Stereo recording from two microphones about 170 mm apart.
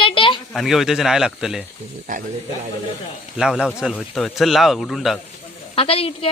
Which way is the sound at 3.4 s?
5° right (ahead or behind).